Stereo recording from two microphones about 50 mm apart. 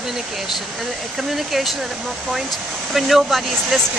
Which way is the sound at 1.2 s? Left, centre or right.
Centre.